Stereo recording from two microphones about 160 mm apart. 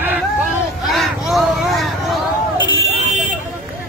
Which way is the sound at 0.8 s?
Centre (ahead or behind).